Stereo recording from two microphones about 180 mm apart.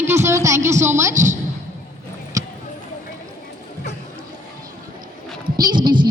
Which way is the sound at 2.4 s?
20° right (ahead or behind).